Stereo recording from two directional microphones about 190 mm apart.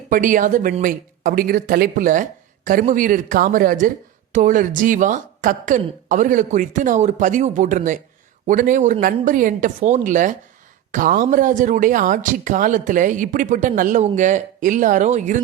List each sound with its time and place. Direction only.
0.1 s speech: 45° right (ahead or behind)